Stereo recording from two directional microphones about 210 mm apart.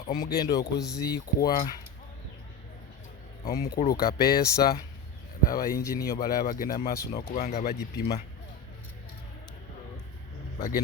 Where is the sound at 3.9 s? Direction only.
45° left (ahead or behind).